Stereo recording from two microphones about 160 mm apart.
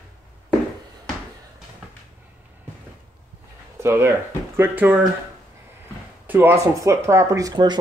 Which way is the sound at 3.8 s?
15° right (ahead or behind).